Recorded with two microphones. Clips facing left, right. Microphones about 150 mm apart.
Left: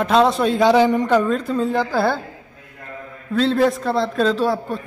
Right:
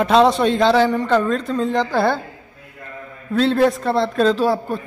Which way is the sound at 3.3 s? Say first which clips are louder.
Right 1 dB; centre (ahead or behind).